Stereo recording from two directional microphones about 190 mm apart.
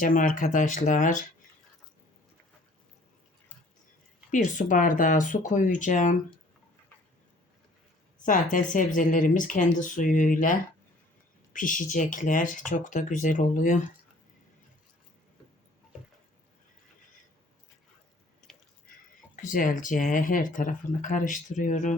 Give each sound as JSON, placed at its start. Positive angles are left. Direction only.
{"t": 0.0, "sound": "speech", "side_deg": 45}
{"t": 4.3, "sound": "speech", "side_deg": 40}
{"t": 8.2, "sound": "speech", "side_deg": 45}
{"t": 18.5, "sound": "a sound", "side_deg": 0}
{"t": 19.4, "sound": "speech", "side_deg": 45}